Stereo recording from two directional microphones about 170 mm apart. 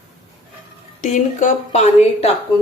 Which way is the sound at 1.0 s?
45° left (ahead or behind).